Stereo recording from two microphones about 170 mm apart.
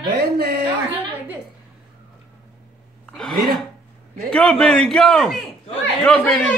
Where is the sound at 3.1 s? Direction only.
5° left (ahead or behind).